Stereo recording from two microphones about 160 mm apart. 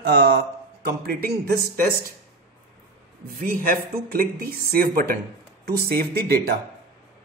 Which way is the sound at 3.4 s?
65° right (ahead or behind).